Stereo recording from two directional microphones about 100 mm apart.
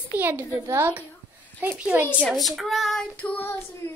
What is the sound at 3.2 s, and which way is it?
Child singing, 20° left (ahead or behind).